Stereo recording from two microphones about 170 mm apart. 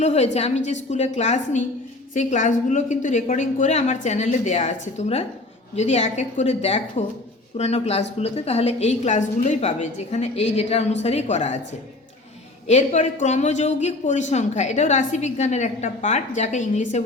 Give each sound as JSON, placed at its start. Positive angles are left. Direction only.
{"t": 0.0, "sound": "a woman's voice", "side_deg": 40}
{"t": 12.6, "sound": "speech", "side_deg": 40}